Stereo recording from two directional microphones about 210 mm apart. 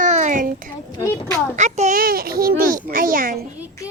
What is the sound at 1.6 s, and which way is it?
A child's voice, 35° right (ahead or behind).